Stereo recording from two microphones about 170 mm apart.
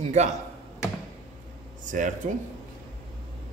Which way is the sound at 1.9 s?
50° right (ahead or behind).